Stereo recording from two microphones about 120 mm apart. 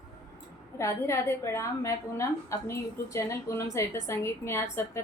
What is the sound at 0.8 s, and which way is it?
A woman's voice, 25° left (ahead or behind).